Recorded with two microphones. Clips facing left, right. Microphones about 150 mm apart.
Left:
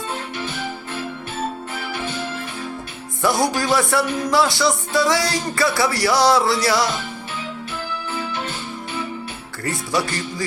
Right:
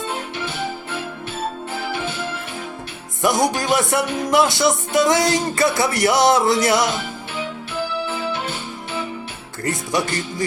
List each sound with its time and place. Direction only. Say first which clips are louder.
3.2 s music: right 1 dB; 20° right (ahead or behind)
9.6 s music: right 1 dB; 20° right (ahead or behind)